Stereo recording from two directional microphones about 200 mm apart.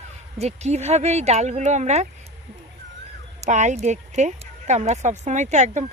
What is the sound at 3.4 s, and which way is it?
Speech, 35° right (ahead or behind).